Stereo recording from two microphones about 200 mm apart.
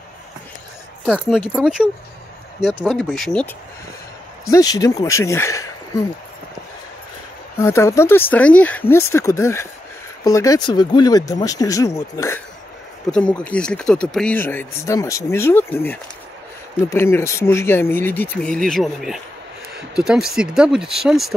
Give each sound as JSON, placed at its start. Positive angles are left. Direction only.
{"t": 1.0, "sound": "speech", "side_deg": -5}
{"t": 4.5, "sound": "speech", "side_deg": 20}
{"t": 7.5, "sound": "speech", "side_deg": 15}